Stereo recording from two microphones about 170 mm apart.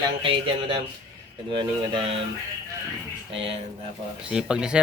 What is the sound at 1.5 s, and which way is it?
Speech, 30° right (ahead or behind).